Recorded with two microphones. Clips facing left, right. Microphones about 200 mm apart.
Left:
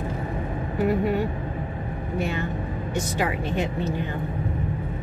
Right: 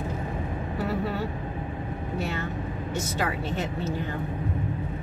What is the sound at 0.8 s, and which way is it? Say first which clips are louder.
A woman's voice: left 7 dB; 15° left (ahead or behind).